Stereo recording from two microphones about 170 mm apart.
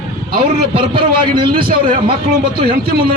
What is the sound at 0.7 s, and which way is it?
Speech, 30° right (ahead or behind).